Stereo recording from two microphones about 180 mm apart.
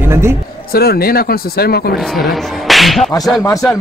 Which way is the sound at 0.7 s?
60° left (ahead or behind).